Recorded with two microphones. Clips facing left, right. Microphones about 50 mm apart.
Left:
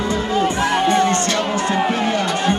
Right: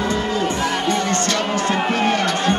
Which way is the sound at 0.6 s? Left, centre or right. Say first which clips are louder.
Left 4 dB; left.